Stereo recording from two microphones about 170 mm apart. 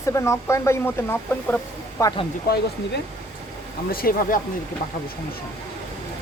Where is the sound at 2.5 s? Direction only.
65° left (ahead or behind).